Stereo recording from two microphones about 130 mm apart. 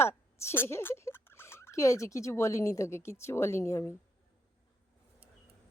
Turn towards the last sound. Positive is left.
turn(degrees=20)  # may be behind; listen again after turning